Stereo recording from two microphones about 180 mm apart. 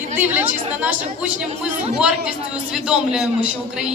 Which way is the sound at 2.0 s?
5° right (ahead or behind).